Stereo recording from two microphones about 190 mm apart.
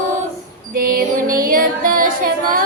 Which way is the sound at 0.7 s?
50° right (ahead or behind).